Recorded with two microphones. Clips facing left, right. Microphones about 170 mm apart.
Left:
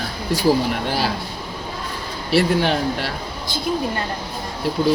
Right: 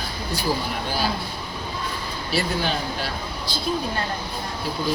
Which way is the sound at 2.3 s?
75° left (ahead or behind).